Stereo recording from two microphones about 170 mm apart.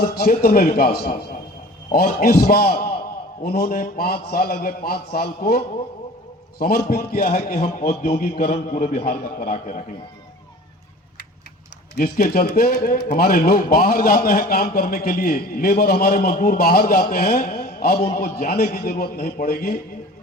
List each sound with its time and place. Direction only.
0.0 s speech: 65° left (ahead or behind)
8.0 s a man's voice: 40° left (ahead or behind); by 9.8 s 55° left (ahead or behind)
11.9 s speech: 65° left (ahead or behind)